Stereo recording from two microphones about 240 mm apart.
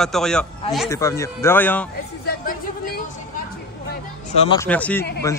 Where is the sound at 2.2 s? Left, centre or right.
Left.